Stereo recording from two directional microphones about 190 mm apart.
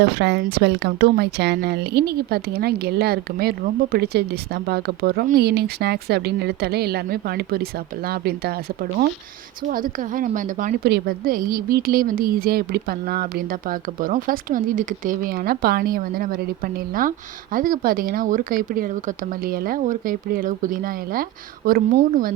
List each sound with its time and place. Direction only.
0.2 s a woman's voice: 65° right (ahead or behind)